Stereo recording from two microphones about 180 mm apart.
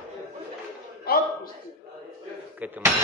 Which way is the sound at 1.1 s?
55° left (ahead or behind).